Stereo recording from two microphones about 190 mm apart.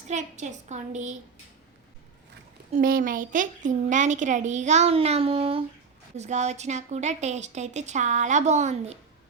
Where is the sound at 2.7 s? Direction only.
50° right (ahead or behind).